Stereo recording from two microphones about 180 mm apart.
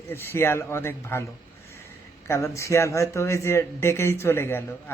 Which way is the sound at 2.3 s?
15° left (ahead or behind).